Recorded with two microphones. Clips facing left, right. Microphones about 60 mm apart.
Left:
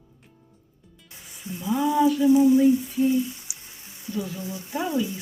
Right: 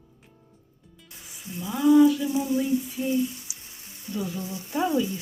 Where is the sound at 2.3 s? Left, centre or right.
Left.